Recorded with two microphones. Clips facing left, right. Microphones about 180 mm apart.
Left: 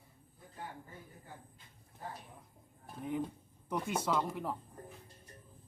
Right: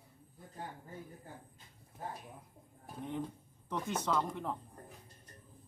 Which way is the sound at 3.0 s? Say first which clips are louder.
Left 3 dB; 5° left (ahead or behind).